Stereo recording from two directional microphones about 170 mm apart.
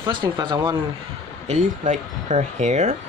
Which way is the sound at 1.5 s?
45° right (ahead or behind).